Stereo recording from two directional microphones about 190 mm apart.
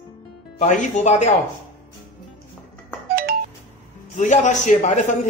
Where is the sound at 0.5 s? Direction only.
40° left (ahead or behind).